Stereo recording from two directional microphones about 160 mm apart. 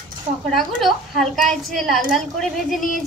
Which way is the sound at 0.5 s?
Centre (ahead or behind).